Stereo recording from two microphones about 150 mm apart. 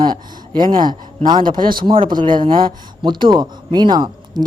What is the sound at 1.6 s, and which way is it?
Speech, 70° right (ahead or behind).